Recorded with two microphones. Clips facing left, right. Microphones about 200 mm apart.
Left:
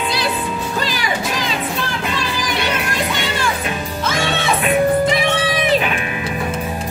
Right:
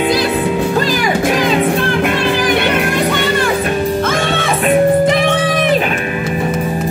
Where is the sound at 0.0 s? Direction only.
55° right (ahead or behind).